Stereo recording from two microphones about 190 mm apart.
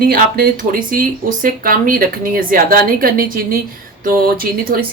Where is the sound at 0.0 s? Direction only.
50° right (ahead or behind).